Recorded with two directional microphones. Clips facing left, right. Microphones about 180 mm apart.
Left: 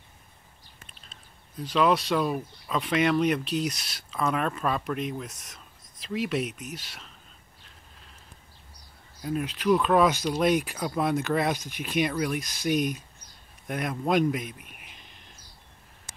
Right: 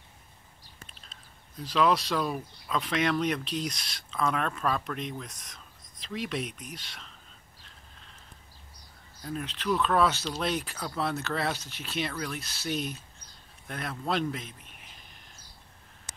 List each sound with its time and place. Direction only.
1.6 s speech: 5° left (ahead or behind)
9.2 s speech: 10° left (ahead or behind)